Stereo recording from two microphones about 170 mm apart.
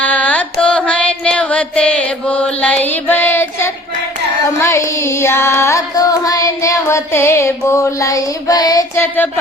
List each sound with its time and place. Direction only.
0.0 s carnatic music: 10° left (ahead or behind)
0.6 s music: 5° left (ahead or behind)
4.6 s carnatic music: 15° left (ahead or behind)